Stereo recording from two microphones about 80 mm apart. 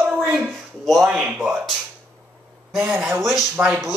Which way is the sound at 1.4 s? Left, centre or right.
Centre.